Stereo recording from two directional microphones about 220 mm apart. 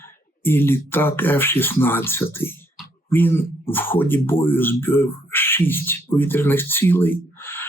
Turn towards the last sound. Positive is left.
turn(degrees=10)  # may be behind; listen again after turning